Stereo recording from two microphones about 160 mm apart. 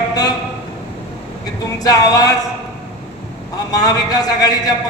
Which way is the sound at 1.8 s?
25° left (ahead or behind).